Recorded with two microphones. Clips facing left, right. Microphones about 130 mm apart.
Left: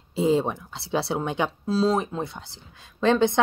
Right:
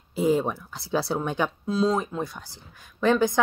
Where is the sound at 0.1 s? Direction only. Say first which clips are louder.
Left 1 dB; 25° left (ahead or behind).